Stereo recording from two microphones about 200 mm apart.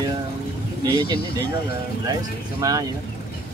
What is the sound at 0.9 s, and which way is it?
Speech, 20° right (ahead or behind).